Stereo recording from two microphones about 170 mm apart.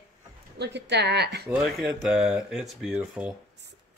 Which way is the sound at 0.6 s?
85° right.